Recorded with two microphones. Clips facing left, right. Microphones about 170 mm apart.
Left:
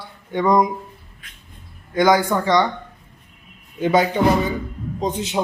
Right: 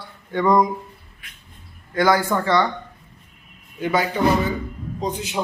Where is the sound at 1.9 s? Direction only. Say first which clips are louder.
Left 2 dB; 15° left (ahead or behind).